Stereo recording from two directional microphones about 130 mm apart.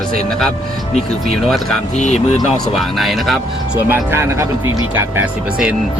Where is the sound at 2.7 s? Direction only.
Centre (ahead or behind).